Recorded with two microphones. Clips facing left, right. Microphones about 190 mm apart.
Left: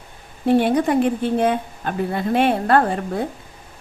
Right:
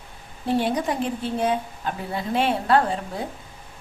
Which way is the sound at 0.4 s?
60° left (ahead or behind).